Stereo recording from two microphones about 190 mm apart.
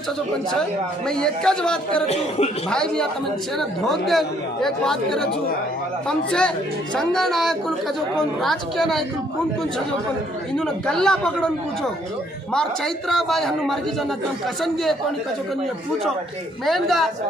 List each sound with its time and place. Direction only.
0.5 s speech: 5° left (ahead or behind)
2.0 s speech: 35° left (ahead or behind)
2.7 s speech: 5° left (ahead or behind)
10.5 s speech: 5° left (ahead or behind)
12.5 s speech: centre (ahead or behind)
16.6 s speech: centre (ahead or behind)